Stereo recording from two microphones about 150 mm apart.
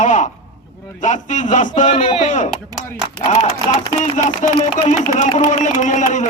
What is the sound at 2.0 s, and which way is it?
Speech, 40° left (ahead or behind).